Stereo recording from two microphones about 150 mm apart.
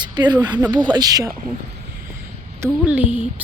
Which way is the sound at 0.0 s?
30° right (ahead or behind).